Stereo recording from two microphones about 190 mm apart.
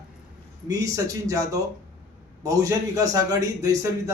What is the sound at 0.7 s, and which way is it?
A man's voice, 15° right (ahead or behind).